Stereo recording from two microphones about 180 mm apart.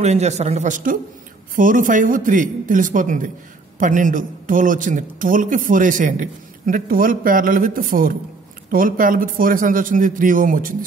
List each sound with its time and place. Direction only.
0.0 s a man's voice: 40° right (ahead or behind)